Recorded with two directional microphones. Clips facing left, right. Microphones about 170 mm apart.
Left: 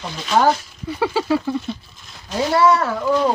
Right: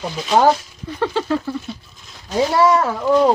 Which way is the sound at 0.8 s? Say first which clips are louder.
Left 1 dB; 10° left (ahead or behind).